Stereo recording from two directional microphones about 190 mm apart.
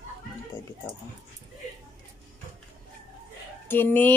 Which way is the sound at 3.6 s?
10° left (ahead or behind).